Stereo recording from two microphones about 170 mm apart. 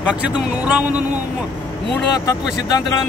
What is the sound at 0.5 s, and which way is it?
Speech, 10° right (ahead or behind).